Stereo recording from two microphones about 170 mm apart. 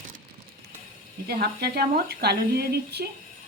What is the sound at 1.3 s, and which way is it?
A woman's voice, 70° right (ahead or behind).